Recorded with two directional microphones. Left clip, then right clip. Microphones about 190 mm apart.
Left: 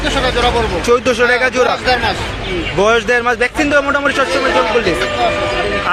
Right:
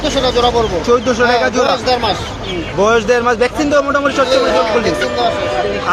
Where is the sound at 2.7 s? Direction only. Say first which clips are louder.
Right 1 dB; 10° left (ahead or behind).